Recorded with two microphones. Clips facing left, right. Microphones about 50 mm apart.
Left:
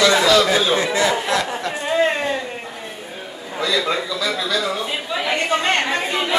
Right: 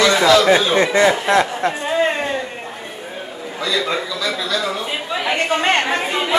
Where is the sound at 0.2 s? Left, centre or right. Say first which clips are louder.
Right 2 dB; centre.